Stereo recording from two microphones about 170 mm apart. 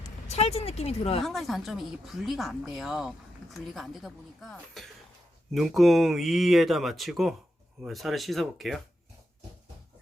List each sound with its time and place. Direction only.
0.3 s speech: 40° left (ahead or behind)
1.2 s speech: centre (ahead or behind)